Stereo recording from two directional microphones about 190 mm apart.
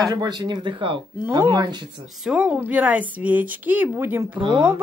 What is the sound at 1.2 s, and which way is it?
Speech, 10° right (ahead or behind).